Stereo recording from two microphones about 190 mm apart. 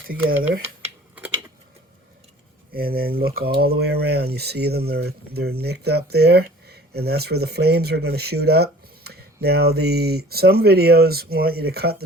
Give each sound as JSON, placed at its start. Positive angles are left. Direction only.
{"t": 0.1, "sound": "speech", "side_deg": -50}
{"t": 2.7, "sound": "speech", "side_deg": -50}